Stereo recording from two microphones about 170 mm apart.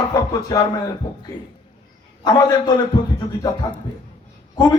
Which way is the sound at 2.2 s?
25° left (ahead or behind).